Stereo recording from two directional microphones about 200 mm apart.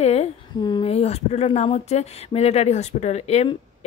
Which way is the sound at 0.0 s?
30° left (ahead or behind).